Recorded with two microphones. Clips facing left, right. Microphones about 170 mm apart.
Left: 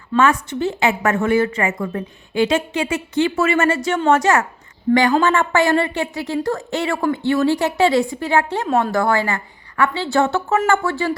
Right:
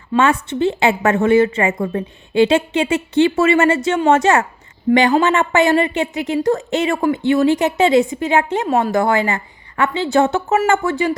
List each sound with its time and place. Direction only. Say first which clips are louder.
0.2 s a woman's voice: right 1 dB; 25° right (ahead or behind)